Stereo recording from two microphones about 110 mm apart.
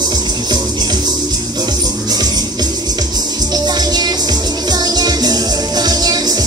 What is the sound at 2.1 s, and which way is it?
Music, 35° right (ahead or behind).